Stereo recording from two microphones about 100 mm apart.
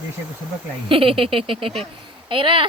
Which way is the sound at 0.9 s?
60° right (ahead or behind).